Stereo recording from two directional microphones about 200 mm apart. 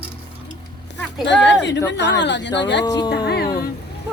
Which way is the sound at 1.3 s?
60° left (ahead or behind).